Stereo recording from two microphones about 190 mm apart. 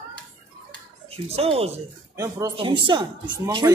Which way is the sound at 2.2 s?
15° right (ahead or behind).